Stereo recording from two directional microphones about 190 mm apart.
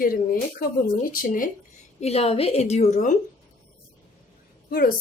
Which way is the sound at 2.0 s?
35° left (ahead or behind).